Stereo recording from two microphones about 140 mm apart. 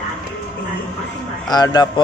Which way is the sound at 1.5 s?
30° left (ahead or behind).